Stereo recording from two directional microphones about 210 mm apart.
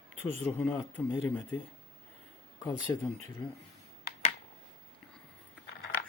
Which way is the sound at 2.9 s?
15° left (ahead or behind).